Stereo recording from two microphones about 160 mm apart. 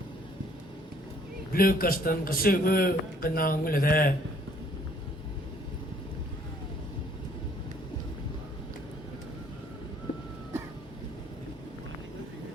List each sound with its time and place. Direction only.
1.5 s a man's voice: 65° left (ahead or behind)